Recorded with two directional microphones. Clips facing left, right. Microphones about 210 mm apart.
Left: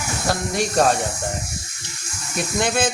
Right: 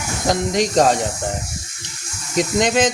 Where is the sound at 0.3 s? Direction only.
20° right (ahead or behind).